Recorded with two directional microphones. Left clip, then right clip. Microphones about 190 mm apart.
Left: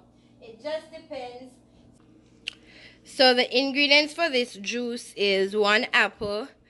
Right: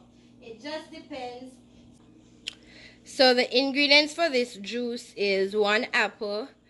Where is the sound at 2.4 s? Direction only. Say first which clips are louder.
Left 2 dB; 5° right (ahead or behind).